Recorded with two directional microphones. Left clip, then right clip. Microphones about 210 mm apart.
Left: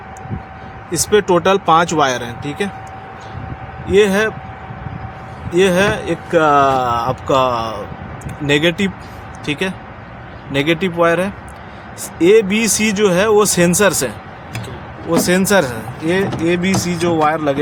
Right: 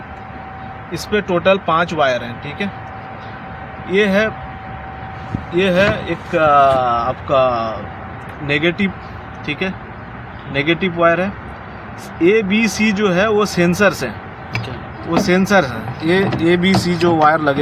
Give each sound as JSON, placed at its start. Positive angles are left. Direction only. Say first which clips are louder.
{"t": 0.9, "sound": "speech", "louder": "left 5 dB", "side_deg": 50}
{"t": 3.9, "sound": "speech", "louder": "left 2 dB", "side_deg": 40}
{"t": 5.5, "sound": "speech", "louder": "left 1 dB", "side_deg": 40}
{"t": 15.1, "sound": "speech", "louder": "even", "side_deg": 30}
{"t": 16.0, "sound": "speech", "louder": "right 2 dB", "side_deg": 10}